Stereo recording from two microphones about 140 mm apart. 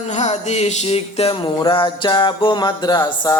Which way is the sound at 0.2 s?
50° left (ahead or behind).